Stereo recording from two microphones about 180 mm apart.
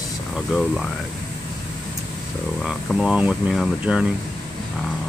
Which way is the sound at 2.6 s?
Centre (ahead or behind).